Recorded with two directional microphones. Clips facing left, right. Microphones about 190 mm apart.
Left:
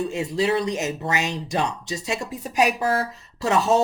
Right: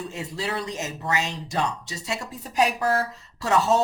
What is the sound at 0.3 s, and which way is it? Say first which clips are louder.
Speech: left 8 dB; 15° left (ahead or behind).